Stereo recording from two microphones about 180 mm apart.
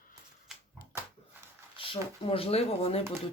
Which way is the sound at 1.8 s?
30° left (ahead or behind).